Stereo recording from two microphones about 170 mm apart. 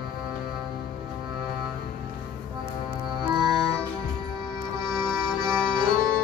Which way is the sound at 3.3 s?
25° right (ahead or behind).